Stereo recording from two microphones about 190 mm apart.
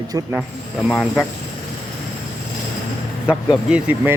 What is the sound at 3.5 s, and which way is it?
Speech, 5° right (ahead or behind).